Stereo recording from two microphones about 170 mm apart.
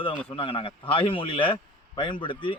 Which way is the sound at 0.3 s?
30° left (ahead or behind).